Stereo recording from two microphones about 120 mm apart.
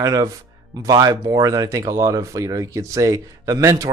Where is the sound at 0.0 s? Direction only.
30° right (ahead or behind).